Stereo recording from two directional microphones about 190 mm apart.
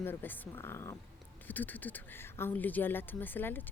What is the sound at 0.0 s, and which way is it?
Speech, 10° left (ahead or behind).